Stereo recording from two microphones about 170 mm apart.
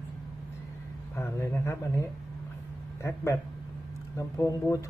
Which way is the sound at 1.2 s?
15° left (ahead or behind).